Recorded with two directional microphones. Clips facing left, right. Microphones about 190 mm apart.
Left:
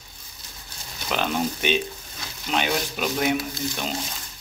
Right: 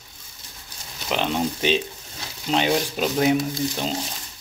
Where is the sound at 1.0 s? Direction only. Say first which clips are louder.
Right 1 dB; 25° right (ahead or behind).